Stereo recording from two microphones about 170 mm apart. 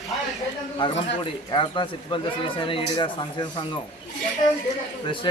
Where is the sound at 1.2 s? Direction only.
30° left (ahead or behind).